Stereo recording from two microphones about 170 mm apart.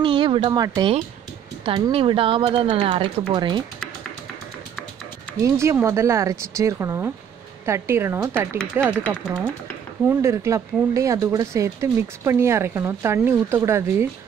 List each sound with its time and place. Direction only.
0.0 s speech: 30° right (ahead or behind)
5.4 s speech: 15° right (ahead or behind)
8.8 s speech: 5° left (ahead or behind)
10.0 s speech: 15° right (ahead or behind)